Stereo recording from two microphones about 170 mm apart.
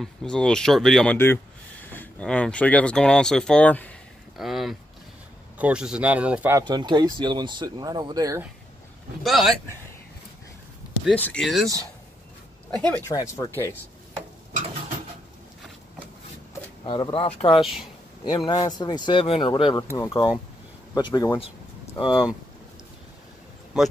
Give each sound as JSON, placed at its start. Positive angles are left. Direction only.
{"t": 0.0, "sound": "speech", "side_deg": 5}
{"t": 1.1, "sound": "speech", "side_deg": 15}
{"t": 6.6, "sound": "speech", "side_deg": -25}
{"t": 9.2, "sound": "speech", "side_deg": 0}
{"t": 11.1, "sound": "speech", "side_deg": 10}
{"t": 12.7, "sound": "speech", "side_deg": 5}
{"t": 13.1, "sound": "speech", "side_deg": 20}
{"t": 16.8, "sound": "speech", "side_deg": 30}
{"t": 17.6, "sound": "speech", "side_deg": 0}
{"t": 18.2, "sound": "speech", "side_deg": 25}
{"t": 19.9, "sound": "speech", "side_deg": 15}